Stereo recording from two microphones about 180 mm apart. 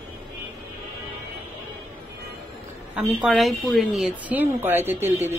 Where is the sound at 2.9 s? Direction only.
Centre (ahead or behind).